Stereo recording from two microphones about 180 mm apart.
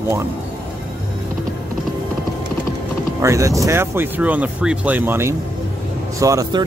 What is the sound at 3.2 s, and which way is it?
Speech, 15° right (ahead or behind).